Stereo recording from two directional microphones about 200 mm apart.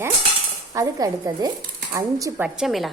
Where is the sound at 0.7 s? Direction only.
20° right (ahead or behind).